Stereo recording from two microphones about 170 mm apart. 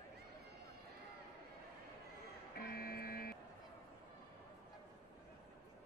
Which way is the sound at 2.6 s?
60° left (ahead or behind).